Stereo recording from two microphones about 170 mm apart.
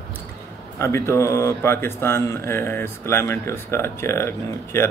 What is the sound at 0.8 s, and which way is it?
Speech, 15° left (ahead or behind).